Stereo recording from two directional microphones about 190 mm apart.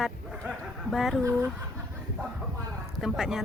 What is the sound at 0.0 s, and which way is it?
Dog, centre (ahead or behind).